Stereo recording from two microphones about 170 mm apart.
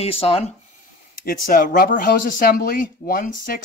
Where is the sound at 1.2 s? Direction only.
55° left (ahead or behind).